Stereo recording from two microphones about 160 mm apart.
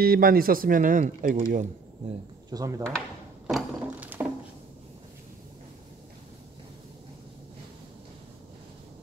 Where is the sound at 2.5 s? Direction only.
20° right (ahead or behind).